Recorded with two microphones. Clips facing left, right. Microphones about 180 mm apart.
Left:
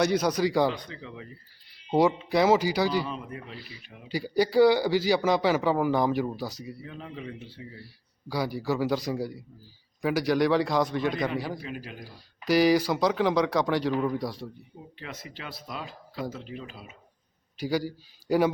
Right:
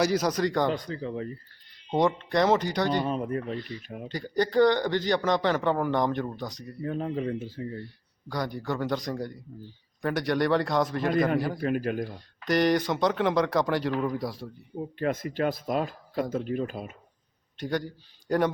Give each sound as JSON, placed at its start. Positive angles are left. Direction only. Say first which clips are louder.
{"t": 0.0, "sound": "speech", "louder": "left 1 dB", "side_deg": 0}
{"t": 0.7, "sound": "speech", "louder": "right 6 dB", "side_deg": -40}
{"t": 1.7, "sound": "speech", "louder": "left 2 dB", "side_deg": 5}
{"t": 3.1, "sound": "speech", "louder": "right 8 dB", "side_deg": -45}
{"t": 3.6, "sound": "speech", "louder": "right 9 dB", "side_deg": 5}
{"t": 3.8, "sound": "speech", "louder": "right 10 dB", "side_deg": -45}
{"t": 4.1, "sound": "speech", "louder": "left 2 dB", "side_deg": 10}
{"t": 6.8, "sound": "speech", "louder": "right 13 dB", "side_deg": -45}
{"t": 8.3, "sound": "speech", "louder": "left 2 dB", "side_deg": 5}
{"t": 11.6, "sound": "speech", "louder": "right 11 dB", "side_deg": -55}
{"t": 12.1, "sound": "speech", "louder": "left 7 dB", "side_deg": 5}
{"t": 14.9, "sound": "speech", "louder": "right 14 dB", "side_deg": -50}
{"t": 17.6, "sound": "speech", "louder": "left 2 dB", "side_deg": 5}